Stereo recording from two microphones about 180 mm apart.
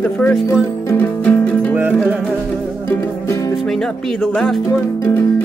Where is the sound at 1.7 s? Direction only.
10° right (ahead or behind).